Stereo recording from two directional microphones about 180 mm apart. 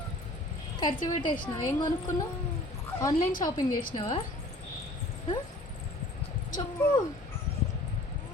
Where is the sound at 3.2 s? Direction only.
50° left (ahead or behind).